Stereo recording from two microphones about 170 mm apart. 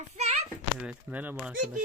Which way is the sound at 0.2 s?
40° right (ahead or behind).